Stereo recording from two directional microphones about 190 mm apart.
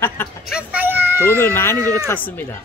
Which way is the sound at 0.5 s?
10° right (ahead or behind).